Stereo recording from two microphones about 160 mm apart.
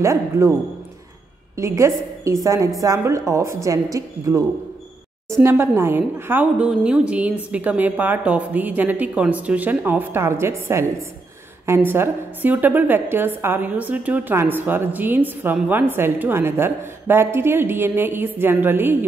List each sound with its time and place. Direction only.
0.0 s a woman's voice: 15° right (ahead or behind)
1.6 s a woman's voice: 20° right (ahead or behind)